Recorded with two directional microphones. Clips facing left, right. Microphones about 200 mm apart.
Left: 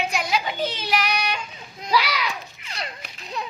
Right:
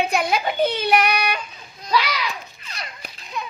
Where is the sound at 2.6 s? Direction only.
25° left (ahead or behind).